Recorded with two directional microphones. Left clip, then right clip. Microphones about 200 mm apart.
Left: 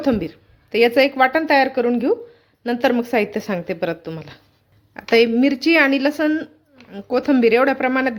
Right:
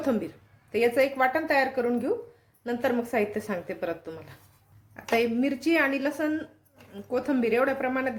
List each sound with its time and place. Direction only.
0.0 s a woman's voice: 40° left (ahead or behind)